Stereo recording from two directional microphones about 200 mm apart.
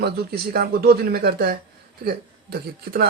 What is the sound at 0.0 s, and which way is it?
A man's voice, 55° right (ahead or behind).